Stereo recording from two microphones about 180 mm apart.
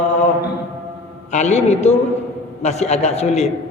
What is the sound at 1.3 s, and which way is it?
A man's voice, 40° left (ahead or behind).